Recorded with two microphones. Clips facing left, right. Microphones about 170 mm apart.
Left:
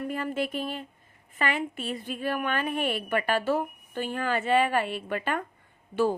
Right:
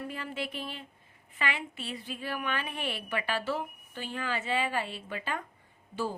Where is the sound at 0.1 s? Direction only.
50° left (ahead or behind).